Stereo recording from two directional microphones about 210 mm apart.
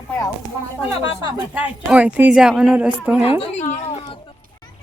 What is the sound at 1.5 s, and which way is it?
Speech, 5° right (ahead or behind).